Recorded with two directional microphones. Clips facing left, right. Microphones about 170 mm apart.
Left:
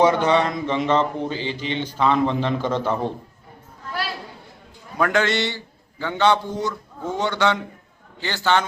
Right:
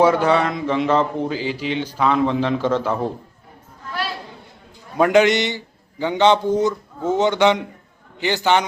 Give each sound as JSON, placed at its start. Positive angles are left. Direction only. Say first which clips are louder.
{"t": 0.0, "sound": "a man's voice", "louder": "right 2 dB", "side_deg": -5}
{"t": 4.9, "sound": "a man's voice", "louder": "right 6 dB", "side_deg": -20}